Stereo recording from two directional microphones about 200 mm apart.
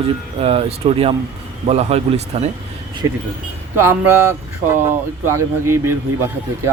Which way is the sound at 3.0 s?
15° right (ahead or behind).